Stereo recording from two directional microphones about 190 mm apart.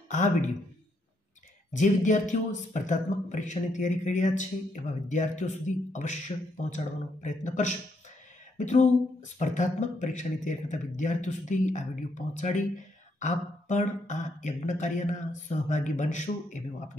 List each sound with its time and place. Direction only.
0.1 s speech: 40° left (ahead or behind)
1.7 s speech: 40° left (ahead or behind)